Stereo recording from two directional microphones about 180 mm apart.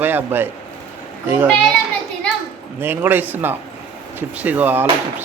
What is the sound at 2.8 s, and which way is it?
A man's voice, 10° right (ahead or behind).